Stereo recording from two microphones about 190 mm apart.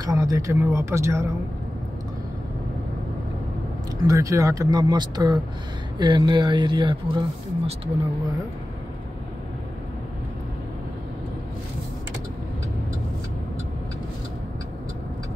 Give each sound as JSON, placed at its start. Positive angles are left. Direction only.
{"t": 0.0, "sound": "speech", "side_deg": -15}
{"t": 4.1, "sound": "speech", "side_deg": -15}